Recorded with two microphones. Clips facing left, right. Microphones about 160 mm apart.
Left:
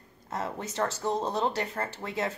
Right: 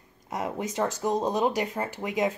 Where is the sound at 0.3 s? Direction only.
10° right (ahead or behind).